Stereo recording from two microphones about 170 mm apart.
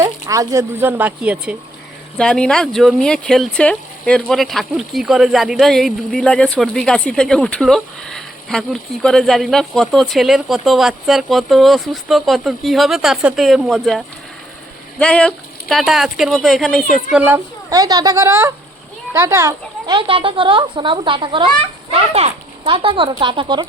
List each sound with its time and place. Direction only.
0.0 s speech: 20° right (ahead or behind)
2.1 s speech: 5° left (ahead or behind); by 20.0 s 15° right (ahead or behind)
20.0 s a child's voice: 30° right (ahead or behind)